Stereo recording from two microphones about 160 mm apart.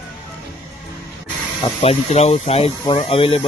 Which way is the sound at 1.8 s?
40° left (ahead or behind).